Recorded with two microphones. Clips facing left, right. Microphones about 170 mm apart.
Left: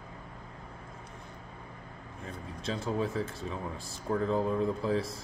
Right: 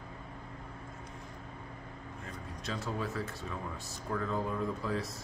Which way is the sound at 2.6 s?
25° left (ahead or behind).